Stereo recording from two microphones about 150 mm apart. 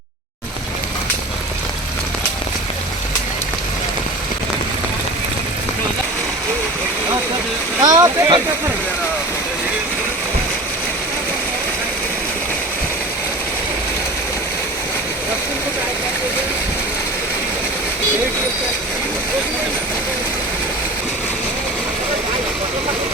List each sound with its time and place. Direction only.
7.8 s speech: 25° right (ahead or behind)